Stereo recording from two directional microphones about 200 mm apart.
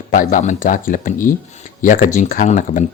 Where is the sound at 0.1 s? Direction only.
40° left (ahead or behind).